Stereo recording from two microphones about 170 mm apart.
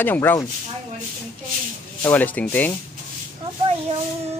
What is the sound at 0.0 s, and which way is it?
Speech, 10° left (ahead or behind).